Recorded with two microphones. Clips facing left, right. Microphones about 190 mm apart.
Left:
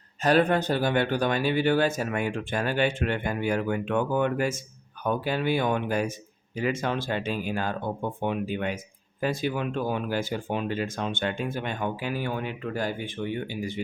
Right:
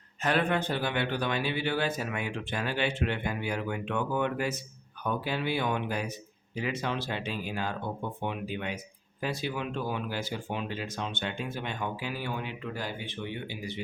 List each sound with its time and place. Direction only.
0.2 s speech: 40° left (ahead or behind)